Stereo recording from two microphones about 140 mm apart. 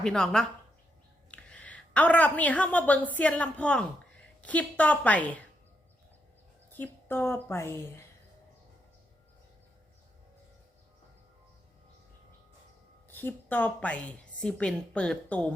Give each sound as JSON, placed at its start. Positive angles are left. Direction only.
{"t": 0.0, "sound": "a woman's voice", "side_deg": 5}
{"t": 6.7, "sound": "a woman's voice", "side_deg": 15}
{"t": 13.1, "sound": "a woman's voice", "side_deg": 15}